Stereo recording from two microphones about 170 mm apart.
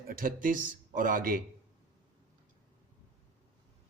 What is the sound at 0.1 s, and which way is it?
Speech, 55° right (ahead or behind).